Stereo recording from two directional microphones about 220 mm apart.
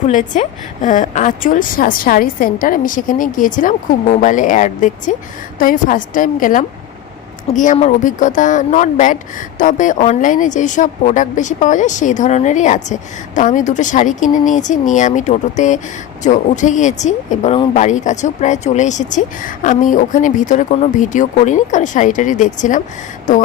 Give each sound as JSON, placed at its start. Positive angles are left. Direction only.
{"t": 0.1, "sound": "speech", "side_deg": 35}